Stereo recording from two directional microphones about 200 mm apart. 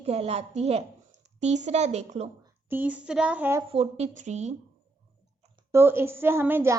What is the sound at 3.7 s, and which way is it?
Speech, 30° right (ahead or behind).